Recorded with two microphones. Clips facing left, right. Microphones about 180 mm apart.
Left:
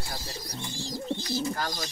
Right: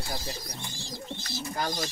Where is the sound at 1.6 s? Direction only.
25° right (ahead or behind).